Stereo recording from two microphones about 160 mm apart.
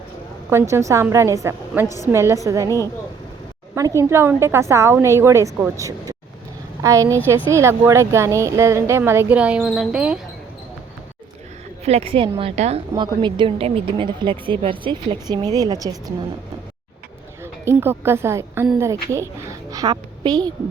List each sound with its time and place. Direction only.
0.5 s a woman's voice: 20° right (ahead or behind)
3.8 s a woman's voice: 20° right (ahead or behind)
11.9 s a woman's voice: 40° right (ahead or behind)
12.9 s a woman's voice: 30° right (ahead or behind)
17.4 s a woman's voice: 15° right (ahead or behind)